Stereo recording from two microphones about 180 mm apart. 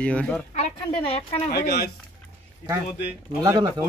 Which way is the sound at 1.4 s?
65° left (ahead or behind).